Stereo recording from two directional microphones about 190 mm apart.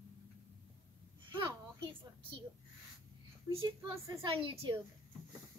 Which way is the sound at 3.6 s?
25° right (ahead or behind).